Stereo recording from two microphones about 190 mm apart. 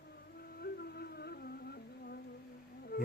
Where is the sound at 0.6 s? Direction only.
55° left (ahead or behind).